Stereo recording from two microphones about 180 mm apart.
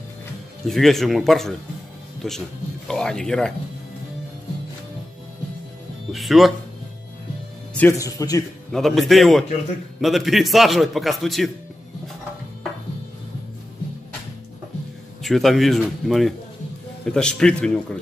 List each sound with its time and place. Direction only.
0.7 s a man's voice: centre (ahead or behind)
6.1 s a man's voice: centre (ahead or behind)
7.8 s speech: 20° left (ahead or behind)
8.7 s a man's voice: centre (ahead or behind)
15.2 s a man's voice: centre (ahead or behind)